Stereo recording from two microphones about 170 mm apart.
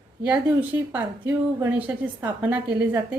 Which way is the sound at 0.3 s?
10° right (ahead or behind).